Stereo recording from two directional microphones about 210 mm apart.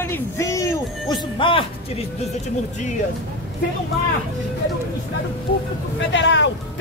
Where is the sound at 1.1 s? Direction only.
25° left (ahead or behind).